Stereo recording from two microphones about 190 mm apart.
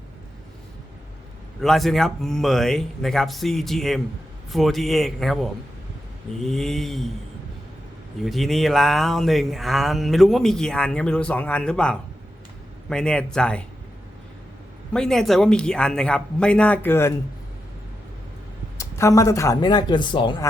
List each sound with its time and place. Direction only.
1.6 s speech: centre (ahead or behind)
8.2 s speech: centre (ahead or behind)
14.9 s speech: 5° left (ahead or behind)
18.8 s speech: 15° left (ahead or behind)